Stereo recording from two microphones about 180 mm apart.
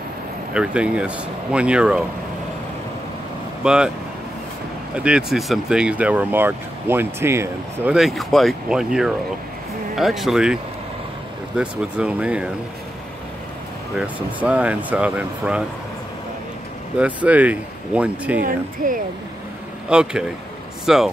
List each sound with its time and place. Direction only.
0.6 s speech: 5° right (ahead or behind)
3.6 s speech: 5° right (ahead or behind)
4.9 s speech: 5° right (ahead or behind)
13.9 s speech: 10° right (ahead or behind)
17.0 s speech: 10° right (ahead or behind)
18.8 s speech: 50° right (ahead or behind)
19.9 s speech: 5° right (ahead or behind)